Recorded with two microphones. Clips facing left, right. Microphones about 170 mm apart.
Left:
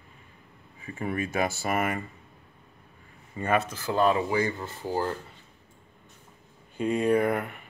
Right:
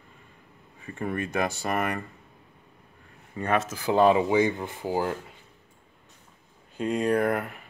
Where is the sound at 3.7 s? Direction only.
15° right (ahead or behind).